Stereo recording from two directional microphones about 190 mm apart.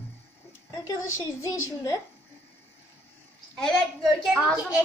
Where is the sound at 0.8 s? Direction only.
15° left (ahead or behind).